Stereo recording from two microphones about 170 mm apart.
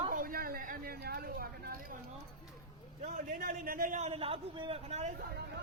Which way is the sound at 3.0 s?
45° right (ahead or behind).